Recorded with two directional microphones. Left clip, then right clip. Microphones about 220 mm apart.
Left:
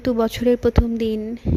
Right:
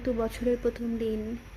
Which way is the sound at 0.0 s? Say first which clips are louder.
Left 9 dB; 40° left (ahead or behind).